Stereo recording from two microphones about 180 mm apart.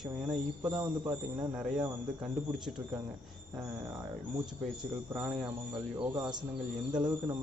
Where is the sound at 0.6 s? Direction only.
20° right (ahead or behind).